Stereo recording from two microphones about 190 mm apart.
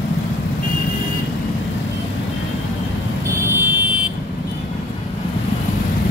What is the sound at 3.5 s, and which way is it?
Vehicle, 10° right (ahead or behind).